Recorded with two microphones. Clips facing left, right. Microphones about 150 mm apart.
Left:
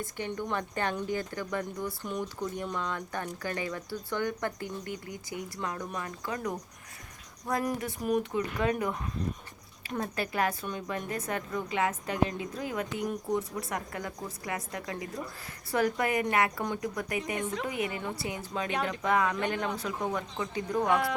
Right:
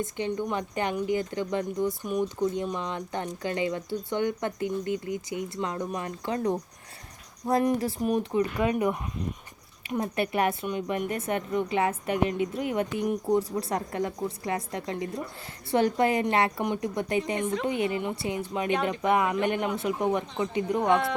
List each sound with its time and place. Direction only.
0.0 s speech: 20° right (ahead or behind)
20.8 s speech: centre (ahead or behind)